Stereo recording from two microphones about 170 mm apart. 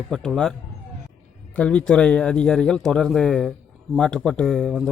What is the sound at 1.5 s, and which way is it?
Speech, 10° left (ahead or behind).